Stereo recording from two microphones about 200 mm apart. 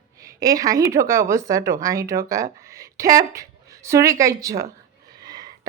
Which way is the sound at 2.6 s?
15° right (ahead or behind).